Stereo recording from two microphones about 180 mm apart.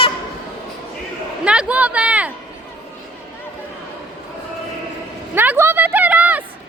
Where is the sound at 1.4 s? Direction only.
5° right (ahead or behind).